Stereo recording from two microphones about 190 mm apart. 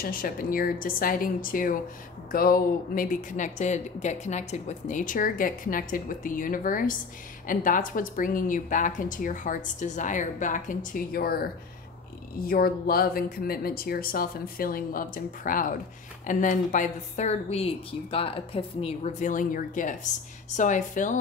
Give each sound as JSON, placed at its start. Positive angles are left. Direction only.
{"t": 0.0, "sound": "speech", "side_deg": 50}
{"t": 12.4, "sound": "speech", "side_deg": 50}